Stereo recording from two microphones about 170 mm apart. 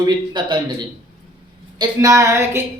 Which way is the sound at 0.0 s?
25° right (ahead or behind).